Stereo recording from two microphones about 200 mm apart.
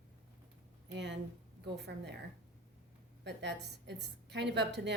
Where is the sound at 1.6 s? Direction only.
55° right (ahead or behind).